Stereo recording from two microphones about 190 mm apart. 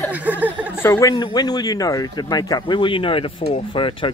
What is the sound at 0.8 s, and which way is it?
Speech, 15° left (ahead or behind).